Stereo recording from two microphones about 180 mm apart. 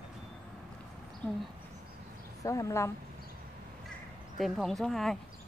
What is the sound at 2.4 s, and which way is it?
Speech, 20° left (ahead or behind).